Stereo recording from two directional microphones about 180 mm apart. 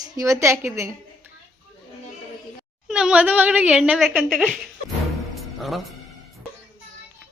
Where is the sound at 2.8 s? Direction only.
5° right (ahead or behind).